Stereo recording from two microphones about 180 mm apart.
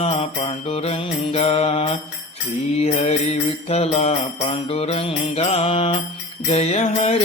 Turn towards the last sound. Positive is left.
turn(degrees=35)  # may be behind; listen again after turning